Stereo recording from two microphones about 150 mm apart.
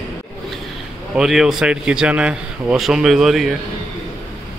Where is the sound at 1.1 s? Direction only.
5° right (ahead or behind).